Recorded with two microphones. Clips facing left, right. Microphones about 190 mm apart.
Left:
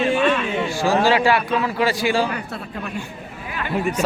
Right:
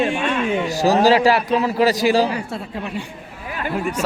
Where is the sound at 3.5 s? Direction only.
40° right (ahead or behind).